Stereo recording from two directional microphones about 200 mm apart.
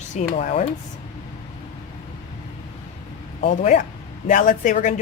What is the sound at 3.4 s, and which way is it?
Speech, 35° left (ahead or behind).